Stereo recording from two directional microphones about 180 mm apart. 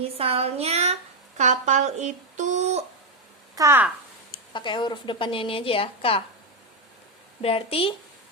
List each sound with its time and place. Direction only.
0.0 s speech: 35° right (ahead or behind)
1.4 s a sound: 40° right (ahead or behind)
3.5 s speech: 15° right (ahead or behind)
4.5 s a woman's voice: 25° left (ahead or behind)
7.4 s a woman's voice: 30° left (ahead or behind)